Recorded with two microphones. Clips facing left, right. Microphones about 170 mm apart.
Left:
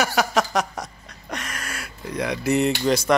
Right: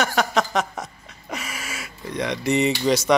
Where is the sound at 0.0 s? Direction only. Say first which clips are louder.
Even; centre (ahead or behind).